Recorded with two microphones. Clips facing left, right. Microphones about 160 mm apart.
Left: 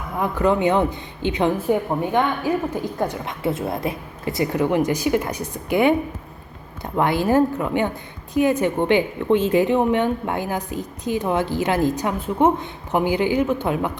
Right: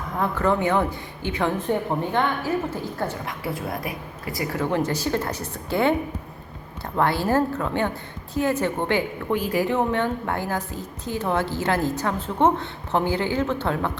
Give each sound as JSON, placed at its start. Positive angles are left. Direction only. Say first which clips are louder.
{"t": 0.2, "sound": "speech", "louder": "left 3 dB", "side_deg": 15}
{"t": 1.5, "sound": "a woman's voice", "louder": "left 3 dB", "side_deg": 10}